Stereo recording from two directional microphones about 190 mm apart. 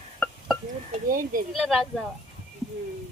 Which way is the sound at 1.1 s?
45° right (ahead or behind).